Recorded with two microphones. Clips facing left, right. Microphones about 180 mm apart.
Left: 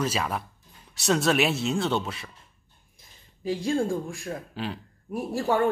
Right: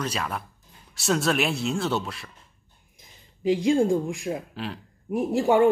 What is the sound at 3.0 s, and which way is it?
Speech, 15° right (ahead or behind).